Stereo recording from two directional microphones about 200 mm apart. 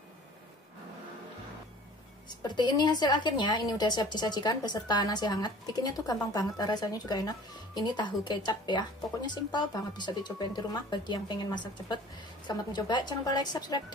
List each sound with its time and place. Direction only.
2.2 s a woman's voice: 20° left (ahead or behind)